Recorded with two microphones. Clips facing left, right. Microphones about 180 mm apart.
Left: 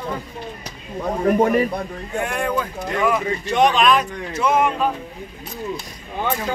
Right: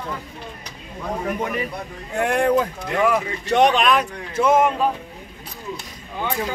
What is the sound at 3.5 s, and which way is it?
Speech, 65° right (ahead or behind).